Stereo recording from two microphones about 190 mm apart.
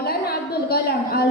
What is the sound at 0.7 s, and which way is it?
Speech, 55° left (ahead or behind).